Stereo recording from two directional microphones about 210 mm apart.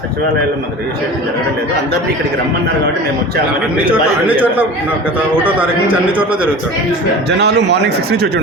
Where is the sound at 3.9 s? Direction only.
5° right (ahead or behind).